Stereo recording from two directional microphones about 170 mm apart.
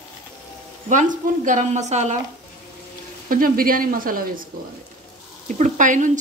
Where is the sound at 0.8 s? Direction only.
50° right (ahead or behind).